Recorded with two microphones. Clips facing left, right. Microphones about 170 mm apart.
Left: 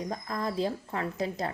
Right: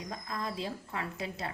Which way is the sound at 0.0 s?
35° left (ahead or behind).